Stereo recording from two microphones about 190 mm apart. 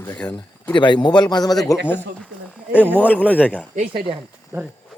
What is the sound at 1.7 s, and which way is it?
Speech, 10° left (ahead or behind).